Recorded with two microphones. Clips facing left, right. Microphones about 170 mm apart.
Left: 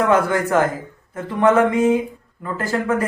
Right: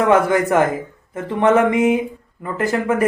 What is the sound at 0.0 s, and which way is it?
A man's voice, 20° right (ahead or behind).